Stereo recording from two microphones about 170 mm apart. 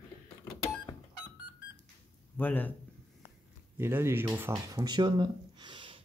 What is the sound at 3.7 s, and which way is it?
Speech, 15° right (ahead or behind).